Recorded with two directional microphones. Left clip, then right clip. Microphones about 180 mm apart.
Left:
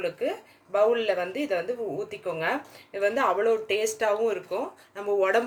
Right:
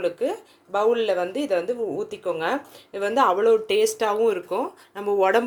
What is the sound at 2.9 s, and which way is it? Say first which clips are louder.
Speech: right 4 dB; 30° right (ahead or behind).